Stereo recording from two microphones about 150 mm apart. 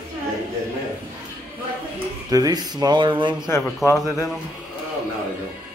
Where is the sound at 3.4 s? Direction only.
20° left (ahead or behind).